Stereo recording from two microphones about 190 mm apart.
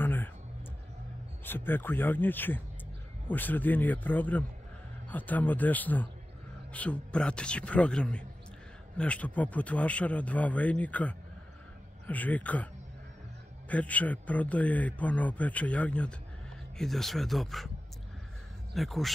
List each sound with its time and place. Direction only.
0.0 s music: 10° left (ahead or behind)
1.4 s a man's voice: 10° left (ahead or behind)
13.7 s a man's voice: 5° left (ahead or behind)
18.8 s a man's voice: centre (ahead or behind)